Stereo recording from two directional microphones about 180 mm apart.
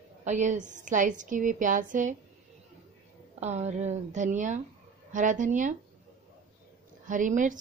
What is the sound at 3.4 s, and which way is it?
A woman's voice, 40° right (ahead or behind).